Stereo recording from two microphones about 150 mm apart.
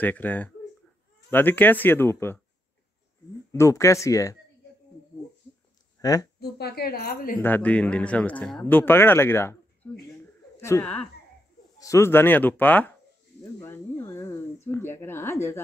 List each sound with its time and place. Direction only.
0.0 s speech: 10° left (ahead or behind)
3.5 s speech: 20° left (ahead or behind)
5.9 s a sound: 25° left (ahead or behind)
6.4 s a woman's voice: 90° left
7.4 s speech: 10° left (ahead or behind)
13.4 s a sound: 20° left (ahead or behind)